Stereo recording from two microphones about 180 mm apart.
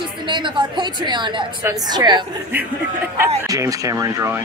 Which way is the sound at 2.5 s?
10° right (ahead or behind).